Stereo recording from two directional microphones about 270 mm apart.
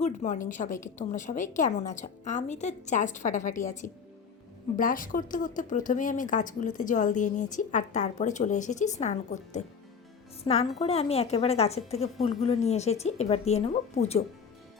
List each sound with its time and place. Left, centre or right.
0.0 s speech: left